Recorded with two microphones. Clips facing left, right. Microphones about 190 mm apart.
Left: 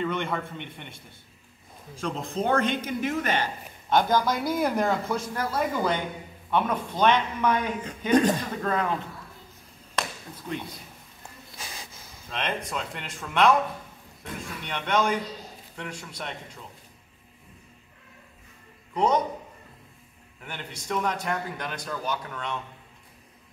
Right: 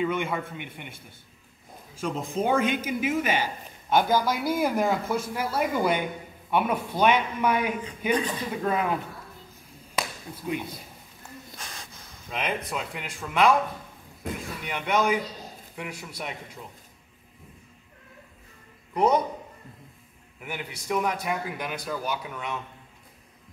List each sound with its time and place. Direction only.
0.0 s speech: 5° right (ahead or behind)
2.0 s speech: 5° right (ahead or behind)
8.1 s speech: 45° left (ahead or behind)
8.5 s speech: 10° right (ahead or behind)
9.9 s a sound: 10° right (ahead or behind)
11.5 s snort: 5° left (ahead or behind)
12.3 s speech: 5° right (ahead or behind)
18.9 s speech: 5° right (ahead or behind)
20.3 s speech: 10° right (ahead or behind)